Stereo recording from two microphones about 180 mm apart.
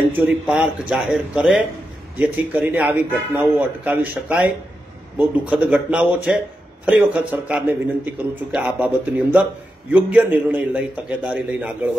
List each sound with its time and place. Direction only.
0.2 s a man's voice: 5° right (ahead or behind)